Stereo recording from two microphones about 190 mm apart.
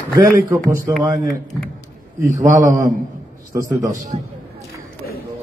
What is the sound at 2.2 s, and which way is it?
Speech, 45° right (ahead or behind).